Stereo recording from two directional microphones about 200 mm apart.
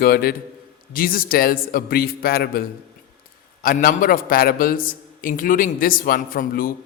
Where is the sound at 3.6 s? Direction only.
45° left (ahead or behind).